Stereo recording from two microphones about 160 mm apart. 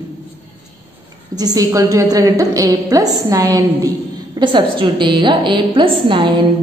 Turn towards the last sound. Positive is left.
turn(degrees=-30)  # may be behind; listen again after turning